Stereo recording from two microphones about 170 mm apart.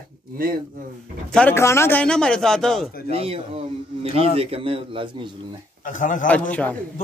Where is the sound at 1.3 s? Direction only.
10° left (ahead or behind).